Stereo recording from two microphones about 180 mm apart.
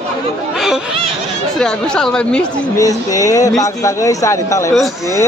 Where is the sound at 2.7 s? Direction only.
20° left (ahead or behind).